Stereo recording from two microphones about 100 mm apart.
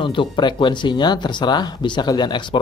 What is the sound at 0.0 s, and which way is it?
Speech, 55° left (ahead or behind).